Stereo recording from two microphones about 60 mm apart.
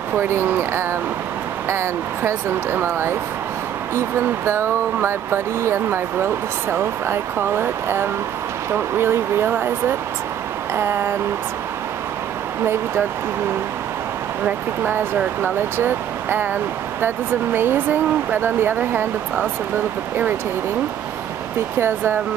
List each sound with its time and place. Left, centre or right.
0.2 s speech: right
4.5 s speech: right
15.4 s speech: right
21.7 s speech: right